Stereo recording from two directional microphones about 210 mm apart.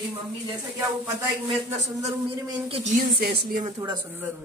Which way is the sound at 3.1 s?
45° right (ahead or behind).